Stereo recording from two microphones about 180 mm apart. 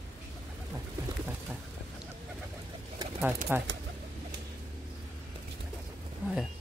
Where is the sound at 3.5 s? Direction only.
10° right (ahead or behind).